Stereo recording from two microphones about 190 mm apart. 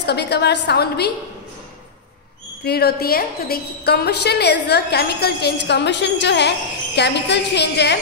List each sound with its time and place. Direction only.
0.0 s a woman's voice: 60° left (ahead or behind)
2.6 s a woman's voice: 55° left (ahead or behind)